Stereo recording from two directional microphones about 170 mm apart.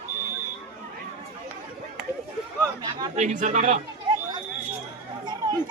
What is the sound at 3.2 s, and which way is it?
Speech, 45° right (ahead or behind).